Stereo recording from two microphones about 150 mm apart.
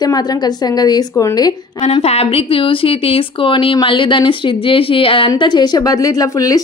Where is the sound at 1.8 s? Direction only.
45° left (ahead or behind); by 6.6 s 25° left (ahead or behind).